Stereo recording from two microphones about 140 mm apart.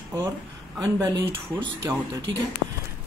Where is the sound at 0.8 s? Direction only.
30° right (ahead or behind).